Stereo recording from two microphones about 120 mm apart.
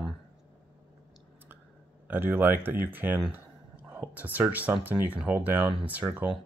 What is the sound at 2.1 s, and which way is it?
Speech, 15° right (ahead or behind).